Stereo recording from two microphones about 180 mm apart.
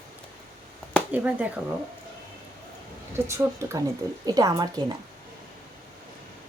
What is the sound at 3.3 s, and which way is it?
A woman's voice, 15° right (ahead or behind).